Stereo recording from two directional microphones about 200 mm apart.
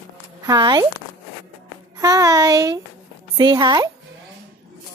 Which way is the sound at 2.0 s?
15° right (ahead or behind).